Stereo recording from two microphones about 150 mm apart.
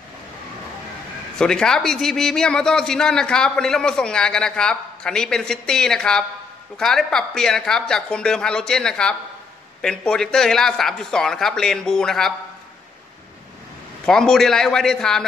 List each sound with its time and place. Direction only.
1.4 s a man's voice: 5° left (ahead or behind)
14.0 s a man's voice: 5° left (ahead or behind)